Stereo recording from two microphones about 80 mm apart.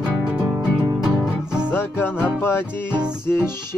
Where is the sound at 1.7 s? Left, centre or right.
Left.